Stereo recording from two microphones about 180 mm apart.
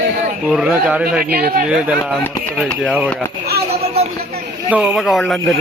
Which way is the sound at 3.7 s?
35° right (ahead or behind).